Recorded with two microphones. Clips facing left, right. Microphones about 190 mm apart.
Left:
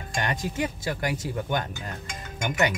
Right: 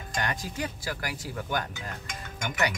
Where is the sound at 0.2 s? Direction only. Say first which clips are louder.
Left 4 dB; 20° left (ahead or behind).